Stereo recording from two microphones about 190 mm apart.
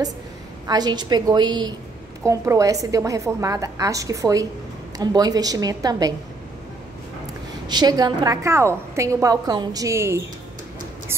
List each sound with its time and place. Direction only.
0.7 s a woman's voice: 20° right (ahead or behind)
7.6 s a woman's voice: 20° right (ahead or behind)